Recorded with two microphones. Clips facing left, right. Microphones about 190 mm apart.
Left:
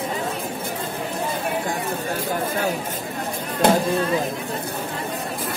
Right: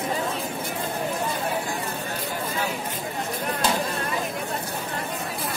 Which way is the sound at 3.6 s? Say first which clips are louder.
Left 9 dB; 60° left (ahead or behind).